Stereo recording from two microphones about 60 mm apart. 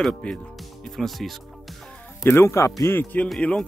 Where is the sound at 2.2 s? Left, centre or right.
Left.